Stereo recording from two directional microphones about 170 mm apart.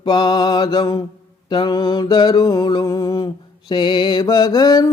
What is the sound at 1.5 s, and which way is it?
Music, 25° left (ahead or behind).